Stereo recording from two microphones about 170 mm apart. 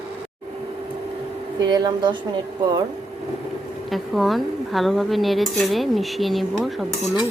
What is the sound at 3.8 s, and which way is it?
Speech, centre (ahead or behind).